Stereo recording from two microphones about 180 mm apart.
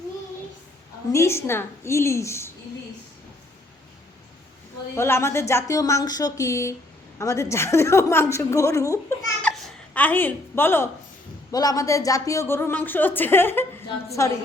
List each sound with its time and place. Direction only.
1.1 s a woman's voice: 15° left (ahead or behind)
4.9 s a woman's voice: 15° left (ahead or behind)
9.4 s a woman's voice: 5° left (ahead or behind)